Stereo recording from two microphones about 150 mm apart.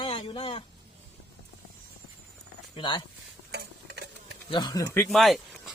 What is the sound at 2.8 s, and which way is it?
Speech, 35° left (ahead or behind).